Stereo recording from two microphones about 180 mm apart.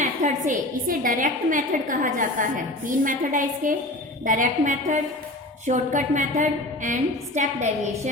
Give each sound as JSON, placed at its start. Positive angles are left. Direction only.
{"t": 0.0, "sound": "a woman's voice", "side_deg": -45}